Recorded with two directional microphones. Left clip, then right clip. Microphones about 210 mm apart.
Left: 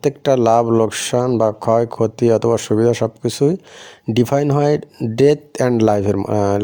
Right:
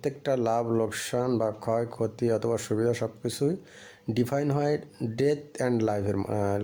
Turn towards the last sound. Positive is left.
turn(degrees=40)  # may be behind; listen again after turning